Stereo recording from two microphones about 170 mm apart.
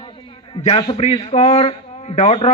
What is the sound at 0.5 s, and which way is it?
A man's voice, 30° left (ahead or behind).